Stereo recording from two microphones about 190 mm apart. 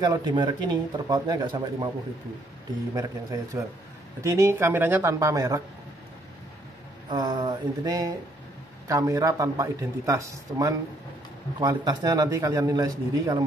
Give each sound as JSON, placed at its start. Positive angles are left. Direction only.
{"t": 0.0, "sound": "speech", "side_deg": -20}
{"t": 2.9, "sound": "a man's voice", "side_deg": -15}
{"t": 7.1, "sound": "a man's voice", "side_deg": -20}